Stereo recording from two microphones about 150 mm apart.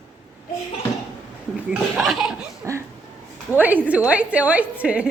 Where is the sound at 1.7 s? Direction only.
Centre (ahead or behind).